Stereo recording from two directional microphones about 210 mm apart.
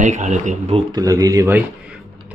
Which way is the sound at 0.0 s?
35° right (ahead or behind).